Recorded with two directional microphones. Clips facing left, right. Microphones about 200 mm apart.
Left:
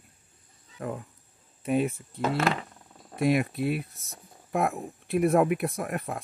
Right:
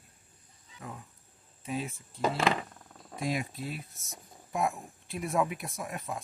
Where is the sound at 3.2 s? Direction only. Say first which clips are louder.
Left 9 dB; 65° left (ahead or behind).